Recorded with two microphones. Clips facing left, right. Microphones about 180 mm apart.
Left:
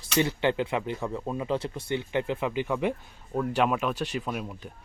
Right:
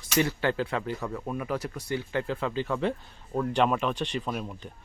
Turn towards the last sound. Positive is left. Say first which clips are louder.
# even
turn(degrees=5)  # may be behind; listen again after turning